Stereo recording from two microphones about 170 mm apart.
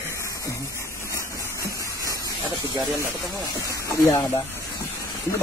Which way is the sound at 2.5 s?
20° right (ahead or behind).